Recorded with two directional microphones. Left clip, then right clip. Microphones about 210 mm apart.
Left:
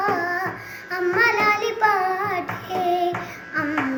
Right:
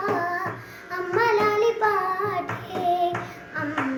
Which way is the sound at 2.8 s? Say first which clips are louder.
Left 1 dB; 15° right (ahead or behind).